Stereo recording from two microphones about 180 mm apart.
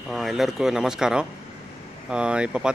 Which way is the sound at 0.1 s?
Centre (ahead or behind).